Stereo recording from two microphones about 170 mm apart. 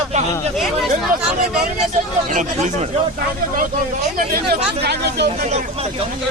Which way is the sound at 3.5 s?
55° right (ahead or behind).